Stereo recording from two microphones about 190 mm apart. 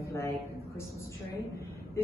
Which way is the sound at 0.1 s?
15° left (ahead or behind).